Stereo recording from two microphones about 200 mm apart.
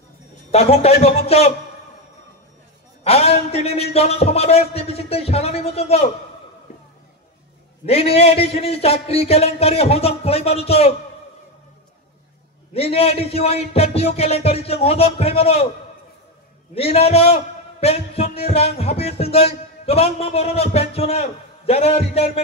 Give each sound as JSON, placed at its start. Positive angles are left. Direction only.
{"t": 0.5, "sound": "a man's voice", "side_deg": 30}
{"t": 3.0, "sound": "a man's voice", "side_deg": 30}
{"t": 7.8, "sound": "a man's voice", "side_deg": 30}
{"t": 12.7, "sound": "a man's voice", "side_deg": 30}
{"t": 16.7, "sound": "a man's voice", "side_deg": 30}